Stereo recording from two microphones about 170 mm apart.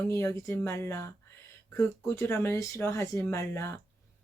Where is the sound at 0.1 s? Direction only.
15° left (ahead or behind).